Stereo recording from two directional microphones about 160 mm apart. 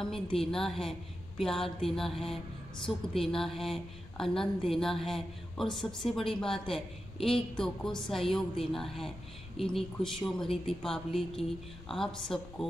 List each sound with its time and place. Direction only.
0.0 s a woman's voice: 5° left (ahead or behind)